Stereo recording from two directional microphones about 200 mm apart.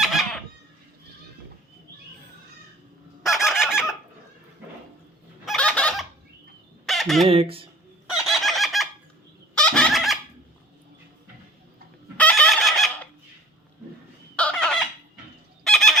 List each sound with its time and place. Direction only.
0.0 s fowl: centre (ahead or behind)
3.2 s fowl: centre (ahead or behind)
5.5 s fowl: 5° left (ahead or behind)
7.3 s speech: 30° right (ahead or behind)
8.2 s chicken: centre (ahead or behind)
9.6 s fowl: 5° left (ahead or behind)
12.1 s fowl: 5° left (ahead or behind)
14.3 s fowl: 5° left (ahead or behind)